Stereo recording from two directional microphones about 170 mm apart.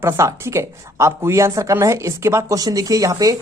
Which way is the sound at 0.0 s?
15° right (ahead or behind).